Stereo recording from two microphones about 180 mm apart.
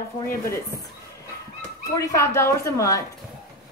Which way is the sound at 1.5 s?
15° left (ahead or behind).